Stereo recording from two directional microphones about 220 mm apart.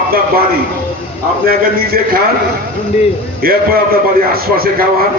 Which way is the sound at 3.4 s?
45° right (ahead or behind).